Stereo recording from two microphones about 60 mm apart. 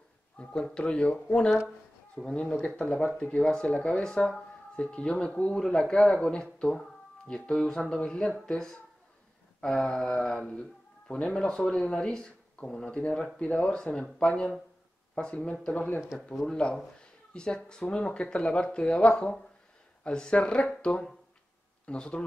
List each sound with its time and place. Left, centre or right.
0.4 s speech: centre
4.0 s speech: centre
16.0 s speech: centre
16.7 s a sound: centre
17.8 s speech: centre